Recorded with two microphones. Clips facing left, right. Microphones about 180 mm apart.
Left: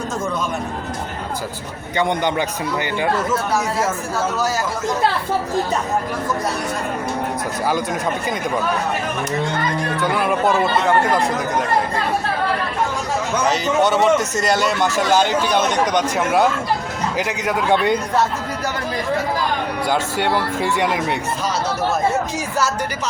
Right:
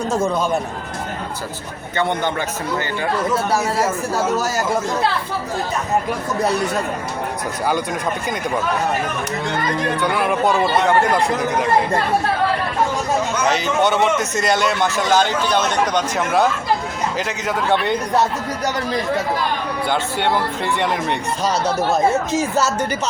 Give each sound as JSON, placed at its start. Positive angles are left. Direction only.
{"t": 0.1, "sound": "speech", "side_deg": -30}
{"t": 2.0, "sound": "speech", "side_deg": 15}
{"t": 10.0, "sound": "speech", "side_deg": 0}
{"t": 13.8, "sound": "speech", "side_deg": 0}
{"t": 14.2, "sound": "a man's voice", "side_deg": 40}
{"t": 14.5, "sound": "speech", "side_deg": 5}
{"t": 19.9, "sound": "speech", "side_deg": 5}
{"t": 22.4, "sound": "speech", "side_deg": -25}